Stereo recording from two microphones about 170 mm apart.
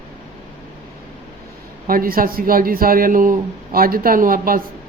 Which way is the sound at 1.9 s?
60° right (ahead or behind).